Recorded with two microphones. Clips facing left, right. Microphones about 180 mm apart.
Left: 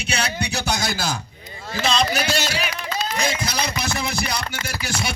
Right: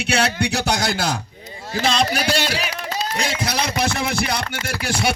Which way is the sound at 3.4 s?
65° right (ahead or behind).